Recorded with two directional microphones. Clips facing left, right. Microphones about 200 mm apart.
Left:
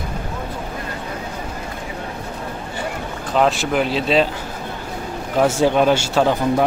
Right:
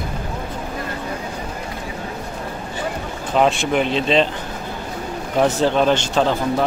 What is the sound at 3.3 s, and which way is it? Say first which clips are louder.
Speech: even; centre (ahead or behind).